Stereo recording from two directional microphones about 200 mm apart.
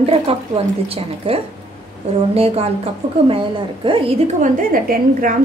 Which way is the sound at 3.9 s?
30° right (ahead or behind).